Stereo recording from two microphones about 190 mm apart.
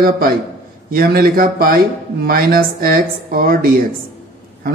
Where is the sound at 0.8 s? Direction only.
50° right (ahead or behind).